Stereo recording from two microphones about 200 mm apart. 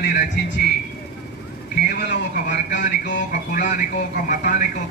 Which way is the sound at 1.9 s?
50° left (ahead or behind).